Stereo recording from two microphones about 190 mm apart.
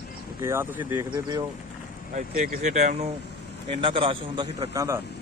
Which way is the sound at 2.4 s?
40° right (ahead or behind).